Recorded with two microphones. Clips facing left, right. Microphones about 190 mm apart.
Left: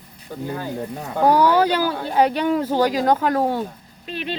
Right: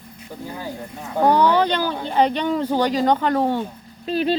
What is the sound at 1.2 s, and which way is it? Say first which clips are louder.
Speech: left 1 dB; 10° left (ahead or behind).